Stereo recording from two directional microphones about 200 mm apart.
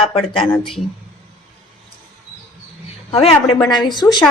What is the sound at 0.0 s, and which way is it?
Speech, 25° left (ahead or behind).